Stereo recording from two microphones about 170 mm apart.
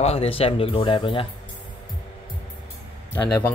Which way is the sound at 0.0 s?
35° left (ahead or behind).